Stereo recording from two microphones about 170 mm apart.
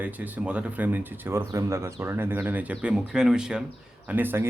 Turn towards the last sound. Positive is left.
turn(degrees=-10)  # may be behind; listen again after turning